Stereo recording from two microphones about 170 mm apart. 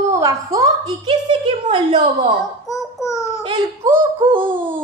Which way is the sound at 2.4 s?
20° left (ahead or behind).